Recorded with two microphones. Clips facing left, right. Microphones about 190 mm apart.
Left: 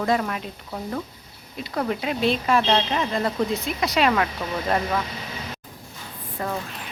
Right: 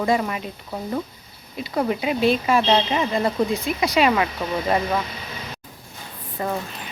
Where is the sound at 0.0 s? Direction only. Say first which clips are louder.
Right 2 dB; 5° right (ahead or behind).